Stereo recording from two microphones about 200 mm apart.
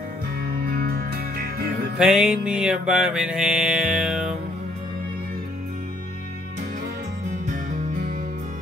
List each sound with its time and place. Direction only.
0.7 s music: 50° right (ahead or behind)
2.0 s music: 5° right (ahead or behind)
7.7 s music: 35° right (ahead or behind)